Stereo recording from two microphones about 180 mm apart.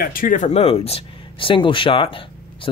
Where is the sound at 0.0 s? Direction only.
50° left (ahead or behind).